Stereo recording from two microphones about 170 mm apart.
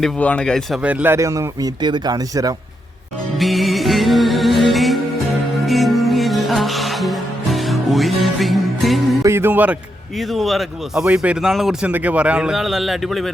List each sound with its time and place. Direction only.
0.0 s speech: 5° left (ahead or behind); by 2.6 s 20° right (ahead or behind)
3.3 s music: centre (ahead or behind)
9.2 s music: 15° right (ahead or behind)
10.2 s speech: centre (ahead or behind)